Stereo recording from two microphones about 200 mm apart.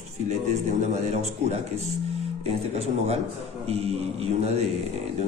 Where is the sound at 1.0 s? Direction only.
35° right (ahead or behind).